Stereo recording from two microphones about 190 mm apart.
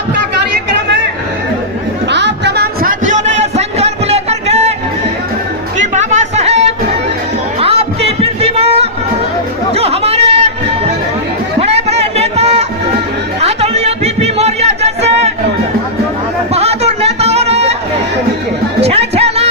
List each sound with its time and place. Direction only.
2.0 s music: 65° right (ahead or behind)
3.0 s a sound: 40° right (ahead or behind)
5.8 s music: 40° right (ahead or behind)
7.6 s a sound: 30° right (ahead or behind)
9.7 s music: 30° right (ahead or behind)
11.6 s music: 35° right (ahead or behind)
16.6 s music: 35° right (ahead or behind)
18.8 s music: 35° right (ahead or behind)